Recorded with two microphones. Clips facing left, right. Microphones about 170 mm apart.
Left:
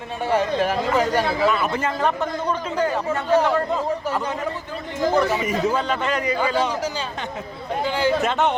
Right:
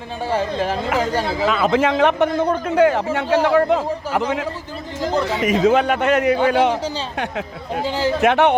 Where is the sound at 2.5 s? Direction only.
65° right (ahead or behind).